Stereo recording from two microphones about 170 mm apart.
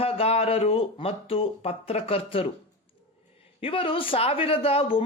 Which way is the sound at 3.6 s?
30° left (ahead or behind).